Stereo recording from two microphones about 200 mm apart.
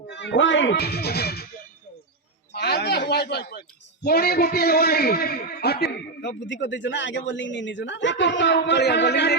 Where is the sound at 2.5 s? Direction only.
55° left (ahead or behind).